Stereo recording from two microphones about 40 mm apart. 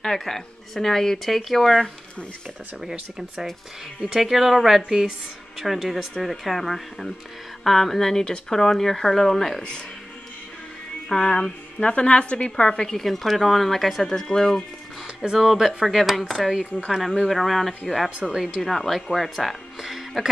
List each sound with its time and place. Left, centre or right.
0.0 s speech: centre
2.8 s speech: centre
4.8 s speech: centre
5.6 s speech: centre
11.1 s music: left
11.9 s a woman's voice: left
12.9 s speech: centre
14.0 s speech: centre
15.2 s speech: centre
15.9 s speech: centre